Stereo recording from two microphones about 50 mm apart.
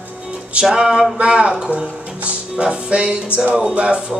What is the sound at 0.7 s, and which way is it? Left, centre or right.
Speech, centre.